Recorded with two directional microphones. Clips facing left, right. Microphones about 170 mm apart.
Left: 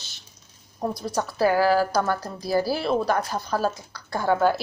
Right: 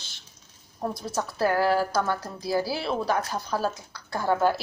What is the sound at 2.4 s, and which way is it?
A woman's voice, 5° right (ahead or behind).